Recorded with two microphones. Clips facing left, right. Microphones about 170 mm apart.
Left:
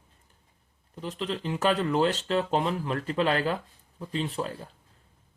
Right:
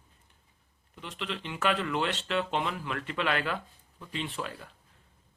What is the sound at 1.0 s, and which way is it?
Speech, 35° left (ahead or behind).